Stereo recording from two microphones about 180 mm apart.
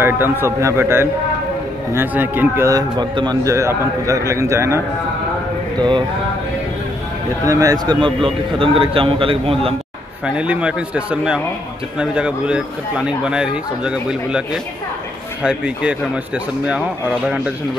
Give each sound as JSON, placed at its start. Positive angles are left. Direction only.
{"t": 0.0, "sound": "a man's voice", "side_deg": -10}
{"t": 5.8, "sound": "a man's voice", "side_deg": -25}
{"t": 7.4, "sound": "a man's voice", "side_deg": -20}
{"t": 10.2, "sound": "a man's voice", "side_deg": -5}